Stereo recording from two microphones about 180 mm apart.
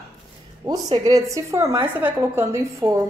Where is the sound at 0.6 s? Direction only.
20° right (ahead or behind).